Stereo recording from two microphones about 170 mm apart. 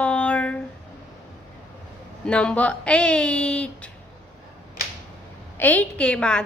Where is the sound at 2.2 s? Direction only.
5° left (ahead or behind).